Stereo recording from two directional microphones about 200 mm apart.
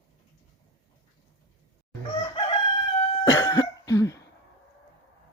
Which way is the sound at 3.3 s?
15° left (ahead or behind).